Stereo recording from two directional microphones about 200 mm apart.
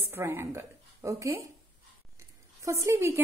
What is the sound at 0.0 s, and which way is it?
A woman's voice, 10° right (ahead or behind).